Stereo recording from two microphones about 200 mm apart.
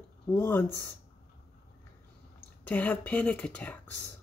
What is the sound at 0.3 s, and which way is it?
Speech, 10° left (ahead or behind).